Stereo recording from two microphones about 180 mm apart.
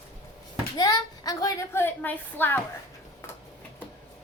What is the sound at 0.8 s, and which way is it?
A woman's voice, 20° left (ahead or behind).